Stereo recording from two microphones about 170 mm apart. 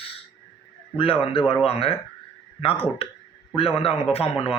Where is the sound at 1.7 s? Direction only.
35° left (ahead or behind).